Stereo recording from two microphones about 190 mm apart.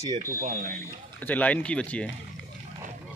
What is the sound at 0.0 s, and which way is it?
Speech, 15° right (ahead or behind).